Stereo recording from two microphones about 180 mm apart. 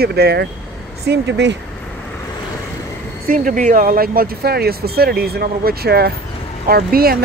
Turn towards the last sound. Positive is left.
turn(degrees=-55)  # may be behind; listen again after turning